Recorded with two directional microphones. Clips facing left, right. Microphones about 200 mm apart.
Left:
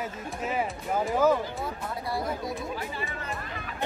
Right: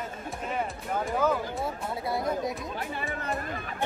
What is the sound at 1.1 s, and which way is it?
Speech, 5° left (ahead or behind).